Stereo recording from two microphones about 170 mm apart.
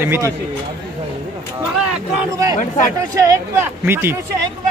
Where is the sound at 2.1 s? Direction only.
20° right (ahead or behind).